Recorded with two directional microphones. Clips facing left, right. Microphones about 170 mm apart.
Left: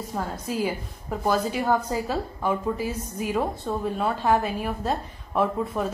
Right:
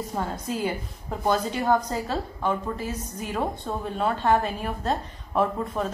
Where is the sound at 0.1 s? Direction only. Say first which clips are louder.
Left 2 dB; 5° right (ahead or behind).